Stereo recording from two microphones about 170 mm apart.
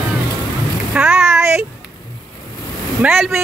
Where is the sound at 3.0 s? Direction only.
10° right (ahead or behind).